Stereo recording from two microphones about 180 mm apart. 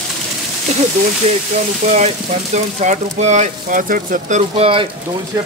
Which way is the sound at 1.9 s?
40° right (ahead or behind).